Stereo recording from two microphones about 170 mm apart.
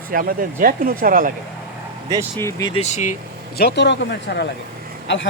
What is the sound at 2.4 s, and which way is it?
Speech, 20° left (ahead or behind).